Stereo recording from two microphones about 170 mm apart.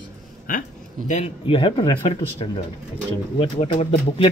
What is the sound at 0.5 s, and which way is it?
Speech, 50° left (ahead or behind).